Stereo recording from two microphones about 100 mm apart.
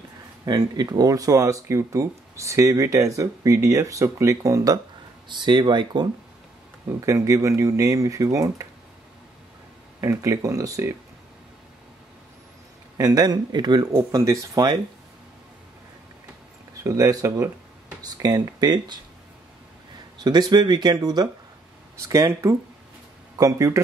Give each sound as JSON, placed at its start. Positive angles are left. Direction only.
{"t": 0.5, "sound": "speech", "side_deg": -45}
{"t": 5.3, "sound": "speech", "side_deg": -50}
{"t": 7.1, "sound": "speech", "side_deg": -30}
{"t": 9.9, "sound": "speech", "side_deg": -30}
{"t": 12.9, "sound": "speech", "side_deg": -40}
{"t": 16.8, "sound": "speech", "side_deg": -35}
{"t": 20.2, "sound": "speech", "side_deg": -45}